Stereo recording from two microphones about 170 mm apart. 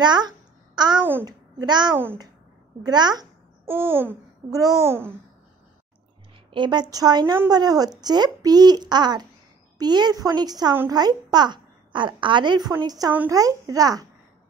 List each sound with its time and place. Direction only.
0.0 s a child's voice: 25° right (ahead or behind)
3.6 s a child's voice: 15° right (ahead or behind)
6.5 s speech: 25° right (ahead or behind)